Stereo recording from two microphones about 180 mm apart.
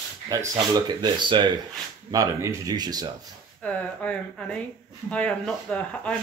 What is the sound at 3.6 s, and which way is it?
Speech, 5° left (ahead or behind).